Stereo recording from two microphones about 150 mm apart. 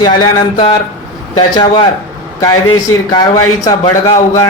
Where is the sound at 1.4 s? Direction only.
30° left (ahead or behind).